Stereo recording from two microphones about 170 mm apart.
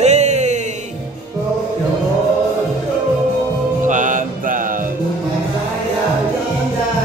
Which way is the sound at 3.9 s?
50° right (ahead or behind).